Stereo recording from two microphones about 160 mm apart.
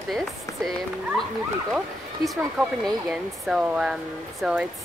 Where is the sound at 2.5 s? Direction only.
5° right (ahead or behind).